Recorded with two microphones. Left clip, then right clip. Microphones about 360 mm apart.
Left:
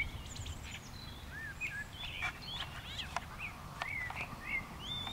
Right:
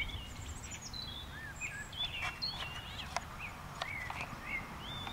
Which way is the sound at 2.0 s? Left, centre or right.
Centre.